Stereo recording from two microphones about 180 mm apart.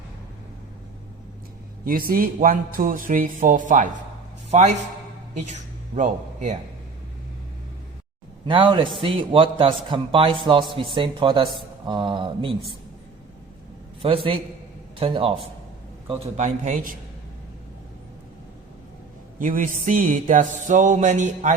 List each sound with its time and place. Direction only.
1.8 s music: 55° right (ahead or behind)
5.5 s speech: 40° right (ahead or behind)
8.4 s a man's voice: 30° right (ahead or behind)
14.0 s a man's voice: 30° right (ahead or behind)
16.4 s music: 45° right (ahead or behind)
19.4 s music: 45° right (ahead or behind)